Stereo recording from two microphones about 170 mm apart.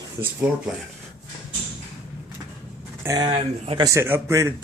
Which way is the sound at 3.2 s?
30° right (ahead or behind).